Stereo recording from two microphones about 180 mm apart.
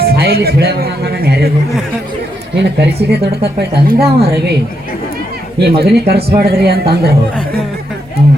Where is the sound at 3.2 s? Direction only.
65° right (ahead or behind).